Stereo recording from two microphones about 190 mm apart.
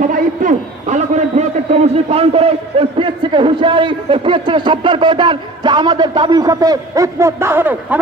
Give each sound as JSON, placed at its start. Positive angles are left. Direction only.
{"t": 0.1, "sound": "a man's voice", "side_deg": -40}